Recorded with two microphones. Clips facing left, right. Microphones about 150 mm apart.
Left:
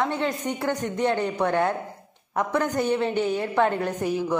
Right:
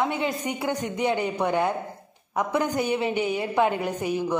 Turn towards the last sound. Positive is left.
turn(degrees=0)  # may be behind; listen again after turning